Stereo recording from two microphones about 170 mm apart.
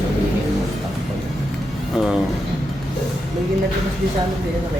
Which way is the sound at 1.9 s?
Centre (ahead or behind).